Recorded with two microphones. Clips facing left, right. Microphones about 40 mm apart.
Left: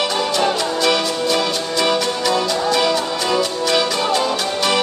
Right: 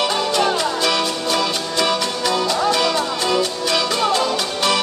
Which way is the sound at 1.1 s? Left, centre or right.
Left.